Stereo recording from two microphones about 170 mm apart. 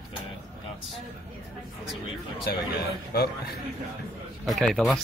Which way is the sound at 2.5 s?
75° left (ahead or behind).